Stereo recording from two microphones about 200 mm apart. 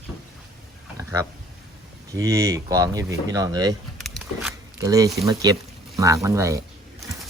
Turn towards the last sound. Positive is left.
turn(degrees=-15)  # may be behind; listen again after turning